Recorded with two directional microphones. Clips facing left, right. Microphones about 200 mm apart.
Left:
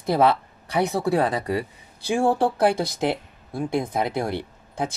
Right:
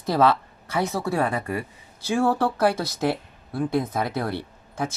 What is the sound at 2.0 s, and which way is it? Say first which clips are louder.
Speech: left 1 dB; 15° left (ahead or behind).